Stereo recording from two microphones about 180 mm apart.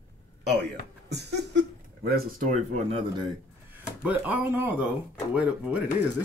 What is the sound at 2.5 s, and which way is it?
Speech, 40° right (ahead or behind).